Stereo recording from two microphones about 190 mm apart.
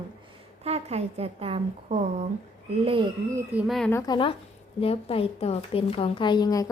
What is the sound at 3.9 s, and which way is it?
A woman's voice, 20° left (ahead or behind).